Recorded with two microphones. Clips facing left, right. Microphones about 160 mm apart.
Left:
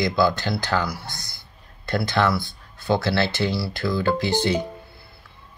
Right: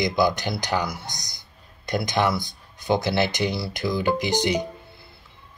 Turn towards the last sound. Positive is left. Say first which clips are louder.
# left 1 dB
turn(degrees=-20)  # may be behind; listen again after turning